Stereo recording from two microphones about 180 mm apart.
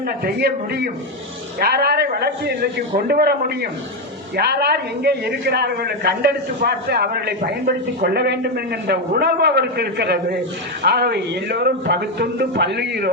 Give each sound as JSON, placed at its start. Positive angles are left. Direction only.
{"t": 0.3, "sound": "a man's voice", "side_deg": -60}